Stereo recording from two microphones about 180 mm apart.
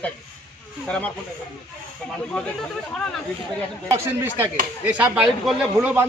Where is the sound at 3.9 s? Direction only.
15° right (ahead or behind).